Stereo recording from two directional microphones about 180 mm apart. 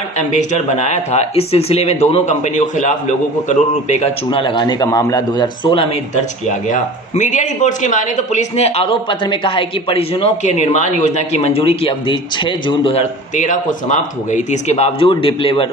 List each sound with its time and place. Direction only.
0.3 s speech: 40° left (ahead or behind); by 5.9 s 25° left (ahead or behind)
6.7 s speech: 45° left (ahead or behind); by 13.0 s 30° left (ahead or behind)
13.4 s speech: 45° left (ahead or behind)